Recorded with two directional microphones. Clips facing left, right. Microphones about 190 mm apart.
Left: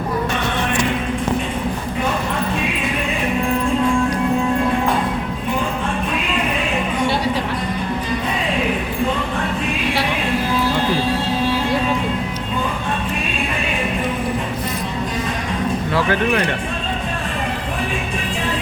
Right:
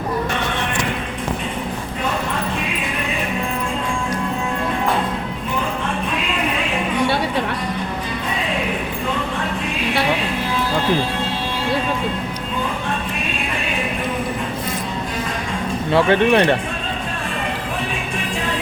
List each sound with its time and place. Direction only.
15.9 s speech: 25° right (ahead or behind)